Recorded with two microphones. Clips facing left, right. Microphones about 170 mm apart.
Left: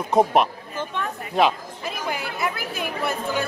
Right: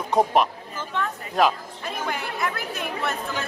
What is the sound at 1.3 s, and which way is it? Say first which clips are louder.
Chatter: left 1 dB; 5° left (ahead or behind).